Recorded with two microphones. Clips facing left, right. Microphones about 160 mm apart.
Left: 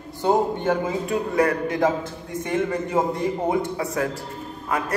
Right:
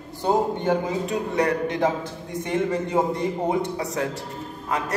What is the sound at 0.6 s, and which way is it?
A man's voice, 20° right (ahead or behind).